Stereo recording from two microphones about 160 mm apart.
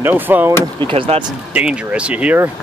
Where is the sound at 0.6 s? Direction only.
30° right (ahead or behind).